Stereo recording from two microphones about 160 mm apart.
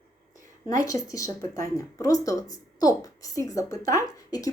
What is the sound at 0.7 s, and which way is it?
A woman's voice, 20° left (ahead or behind).